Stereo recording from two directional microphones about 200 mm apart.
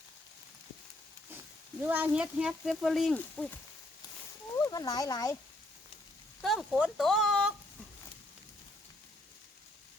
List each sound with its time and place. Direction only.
1.8 s speech: 10° right (ahead or behind); by 3.6 s 5° left (ahead or behind)
4.5 s speech: 15° left (ahead or behind)
6.4 s speech: centre (ahead or behind)